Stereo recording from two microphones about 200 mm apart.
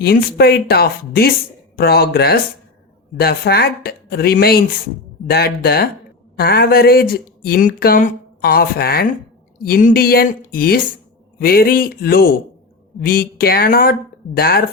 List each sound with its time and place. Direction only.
0.0 s speech: 50° left (ahead or behind)